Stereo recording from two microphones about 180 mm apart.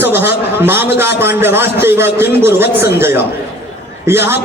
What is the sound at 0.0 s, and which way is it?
A man's voice, 10° right (ahead or behind).